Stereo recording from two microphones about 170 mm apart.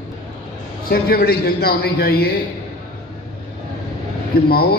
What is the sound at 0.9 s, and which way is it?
A man's voice, 65° left (ahead or behind).